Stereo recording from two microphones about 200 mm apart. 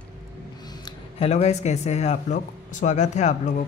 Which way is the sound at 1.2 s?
35° left (ahead or behind).